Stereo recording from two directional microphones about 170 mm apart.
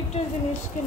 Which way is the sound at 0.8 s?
50° left (ahead or behind).